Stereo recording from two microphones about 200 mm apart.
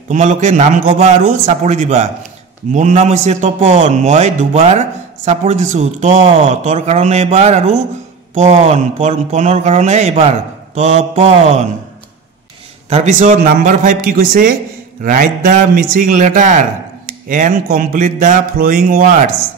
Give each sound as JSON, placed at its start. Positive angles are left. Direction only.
{"t": 0.1, "sound": "a man's voice", "side_deg": -35}
{"t": 12.9, "sound": "a man's voice", "side_deg": -35}